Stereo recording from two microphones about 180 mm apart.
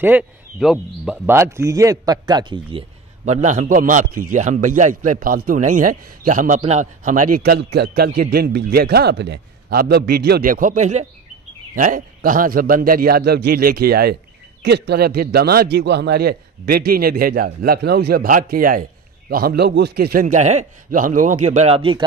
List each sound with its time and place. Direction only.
0.0 s a man's voice: 5° right (ahead or behind); by 2.8 s 25° right (ahead or behind)
3.3 s a man's voice: 40° right (ahead or behind)